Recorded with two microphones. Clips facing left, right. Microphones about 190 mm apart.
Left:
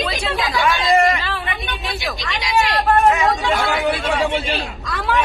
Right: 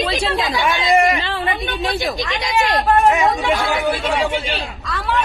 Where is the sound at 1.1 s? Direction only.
25° right (ahead or behind).